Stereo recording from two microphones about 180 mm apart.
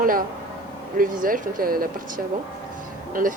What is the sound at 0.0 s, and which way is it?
Speech, 50° right (ahead or behind).